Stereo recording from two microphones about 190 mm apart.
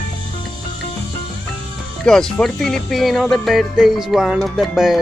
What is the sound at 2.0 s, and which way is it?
Speech, 5° left (ahead or behind).